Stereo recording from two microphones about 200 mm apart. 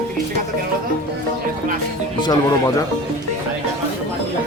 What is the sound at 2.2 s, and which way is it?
Speech, 20° left (ahead or behind).